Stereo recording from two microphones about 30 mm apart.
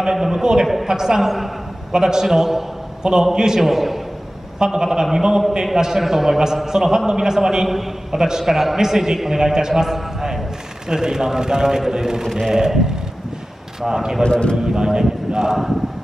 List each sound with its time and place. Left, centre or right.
0.0 s a man's voice: centre
3.0 s a man's voice: right
3.6 s a man's voice: centre
4.6 s a man's voice: right
10.9 s a man's voice: right
13.8 s a man's voice: centre
14.2 s a man's voice: left
14.6 s speech: right